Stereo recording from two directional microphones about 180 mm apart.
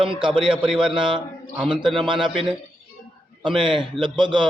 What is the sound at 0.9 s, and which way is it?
Speech, 30° right (ahead or behind).